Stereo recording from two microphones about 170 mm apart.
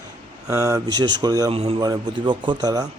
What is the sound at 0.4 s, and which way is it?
A man's voice, 20° right (ahead or behind).